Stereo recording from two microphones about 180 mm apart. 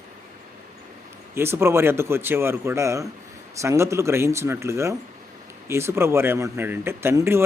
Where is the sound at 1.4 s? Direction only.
15° right (ahead or behind).